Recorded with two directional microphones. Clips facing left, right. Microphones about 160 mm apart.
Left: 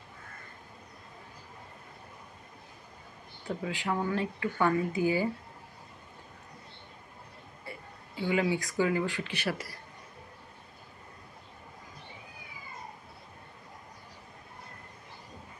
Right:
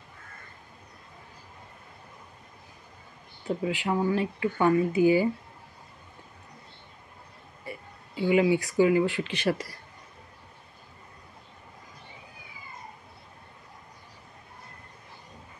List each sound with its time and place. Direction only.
3.4 s speech: 20° right (ahead or behind)
7.7 s a sound: 15° right (ahead or behind)
8.3 s speech: 15° right (ahead or behind)